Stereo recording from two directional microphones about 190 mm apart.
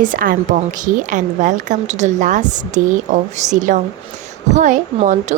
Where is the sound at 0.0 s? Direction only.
45° right (ahead or behind).